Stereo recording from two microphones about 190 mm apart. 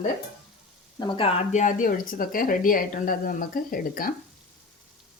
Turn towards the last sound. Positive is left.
turn(degrees=50)  # may be behind; listen again after turning